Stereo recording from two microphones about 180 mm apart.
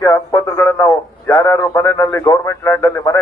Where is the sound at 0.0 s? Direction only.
20° left (ahead or behind).